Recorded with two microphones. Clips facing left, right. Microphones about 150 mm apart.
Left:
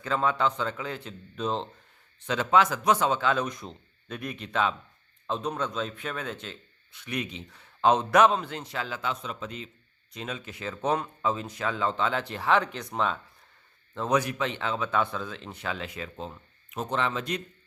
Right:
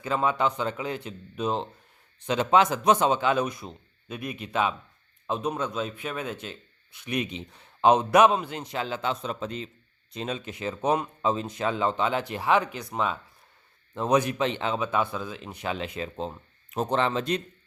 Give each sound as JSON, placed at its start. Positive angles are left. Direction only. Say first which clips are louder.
{"t": 0.0, "sound": "speech", "louder": "right 1 dB", "side_deg": -10}
{"t": 13.9, "sound": "speech", "louder": "right 3 dB", "side_deg": -20}